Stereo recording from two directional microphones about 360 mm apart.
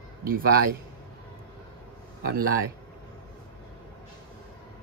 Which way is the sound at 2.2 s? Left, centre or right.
Right.